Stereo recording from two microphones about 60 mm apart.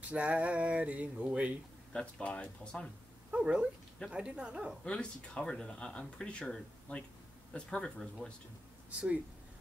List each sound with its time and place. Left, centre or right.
0.1 s a sound: right
1.9 s speech: centre
3.3 s cat: centre
4.1 s speech: centre
4.8 s speech: centre